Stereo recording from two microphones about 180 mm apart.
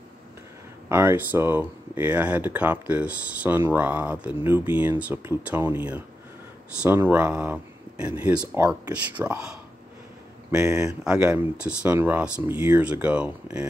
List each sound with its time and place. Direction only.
0.8 s speech: 15° right (ahead or behind)
10.5 s speech: 15° right (ahead or behind)
10.9 s speech: 5° right (ahead or behind)